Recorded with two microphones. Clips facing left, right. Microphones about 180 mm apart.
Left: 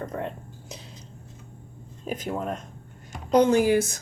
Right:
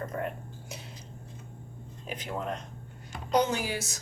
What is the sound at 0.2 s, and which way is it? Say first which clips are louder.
Whispering: left 2 dB; 30° left (ahead or behind).